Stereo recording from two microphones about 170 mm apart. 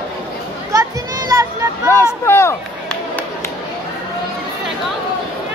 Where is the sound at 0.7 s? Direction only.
20° right (ahead or behind).